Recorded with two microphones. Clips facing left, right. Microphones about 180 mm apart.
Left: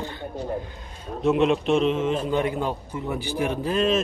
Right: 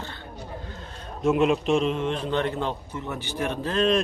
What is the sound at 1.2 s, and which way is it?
A man's voice, centre (ahead or behind).